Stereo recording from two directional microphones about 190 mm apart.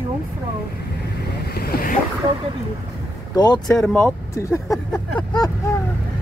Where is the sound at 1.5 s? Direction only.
55° left (ahead or behind).